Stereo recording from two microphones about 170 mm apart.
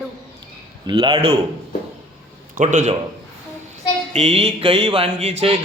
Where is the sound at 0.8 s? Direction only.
25° right (ahead or behind).